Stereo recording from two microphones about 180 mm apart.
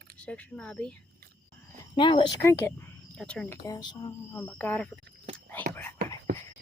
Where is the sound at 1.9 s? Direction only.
25° left (ahead or behind).